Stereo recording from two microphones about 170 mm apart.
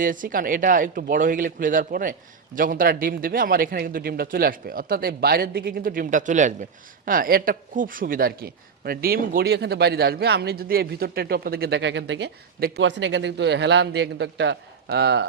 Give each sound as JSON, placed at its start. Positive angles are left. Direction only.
{"t": 0.0, "sound": "a man's voice", "side_deg": -50}